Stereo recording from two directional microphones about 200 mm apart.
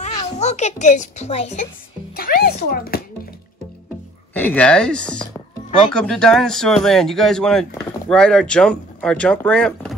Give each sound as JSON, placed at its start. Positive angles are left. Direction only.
{"t": 0.4, "sound": "speech", "side_deg": 35}
{"t": 2.1, "sound": "a child's voice", "side_deg": 50}
{"t": 4.3, "sound": "speech", "side_deg": 10}